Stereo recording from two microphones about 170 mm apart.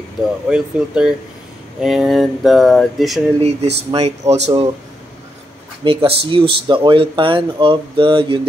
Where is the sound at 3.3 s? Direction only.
40° right (ahead or behind).